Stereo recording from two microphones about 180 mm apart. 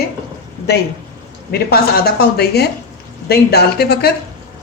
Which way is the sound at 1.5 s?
60° left (ahead or behind).